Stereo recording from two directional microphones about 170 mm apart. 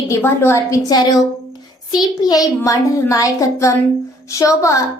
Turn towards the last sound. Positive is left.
turn(degrees=20)  # may be behind; listen again after turning